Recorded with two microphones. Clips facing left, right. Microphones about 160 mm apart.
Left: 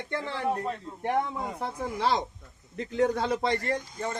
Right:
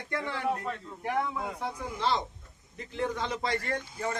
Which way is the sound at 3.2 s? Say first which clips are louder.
Left 4 dB; 35° left (ahead or behind).